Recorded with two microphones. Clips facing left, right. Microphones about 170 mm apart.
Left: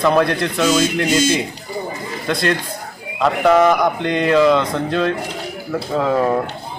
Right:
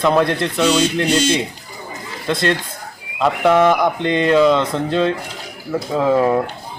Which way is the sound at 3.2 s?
Centre (ahead or behind).